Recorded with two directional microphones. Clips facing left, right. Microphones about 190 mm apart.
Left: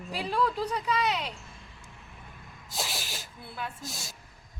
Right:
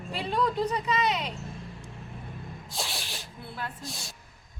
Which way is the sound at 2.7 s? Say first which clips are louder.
Left 2 dB; centre (ahead or behind).